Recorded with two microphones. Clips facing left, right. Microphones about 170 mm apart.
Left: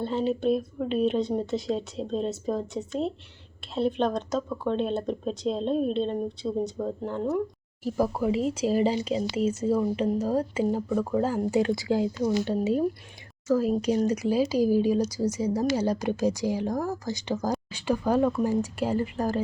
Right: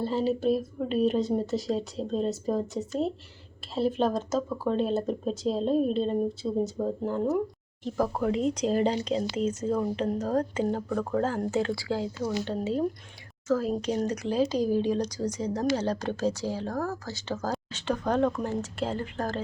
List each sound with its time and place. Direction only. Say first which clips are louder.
0.0 s speech: even; centre (ahead or behind)
7.9 s speech: left 2 dB; 10° left (ahead or behind)